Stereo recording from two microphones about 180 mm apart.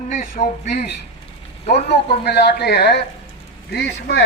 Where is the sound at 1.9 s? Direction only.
65° left (ahead or behind).